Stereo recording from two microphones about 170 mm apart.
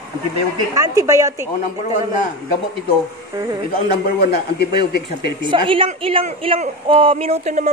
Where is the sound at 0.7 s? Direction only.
20° right (ahead or behind).